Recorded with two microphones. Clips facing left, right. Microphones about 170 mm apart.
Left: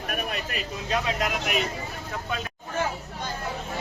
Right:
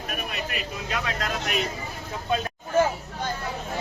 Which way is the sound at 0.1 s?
40° left (ahead or behind).